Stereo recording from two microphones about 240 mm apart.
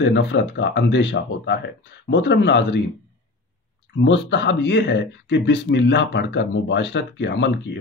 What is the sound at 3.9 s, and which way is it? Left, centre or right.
Speech, left.